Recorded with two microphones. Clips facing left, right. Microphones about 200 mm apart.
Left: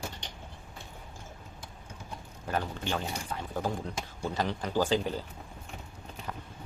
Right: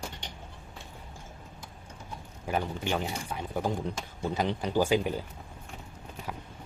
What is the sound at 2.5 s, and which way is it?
Speech, 15° right (ahead or behind).